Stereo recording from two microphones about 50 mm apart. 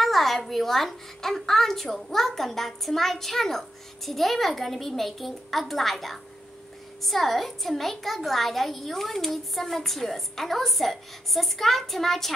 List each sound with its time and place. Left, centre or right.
0.0 s a woman's voice: centre